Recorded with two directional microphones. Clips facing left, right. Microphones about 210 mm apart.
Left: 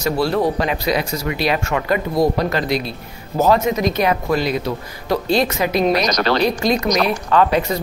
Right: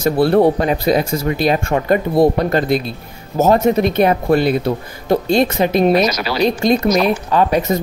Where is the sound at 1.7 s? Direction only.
35° right (ahead or behind).